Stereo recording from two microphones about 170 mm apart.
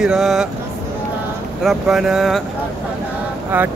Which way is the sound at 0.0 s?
Centre (ahead or behind).